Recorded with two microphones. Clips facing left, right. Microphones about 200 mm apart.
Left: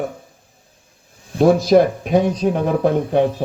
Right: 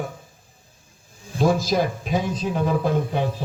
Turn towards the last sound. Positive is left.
turn(degrees=60)  # may be behind; listen again after turning